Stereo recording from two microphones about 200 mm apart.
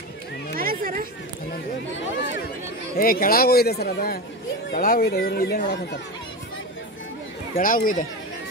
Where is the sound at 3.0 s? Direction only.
45° left (ahead or behind).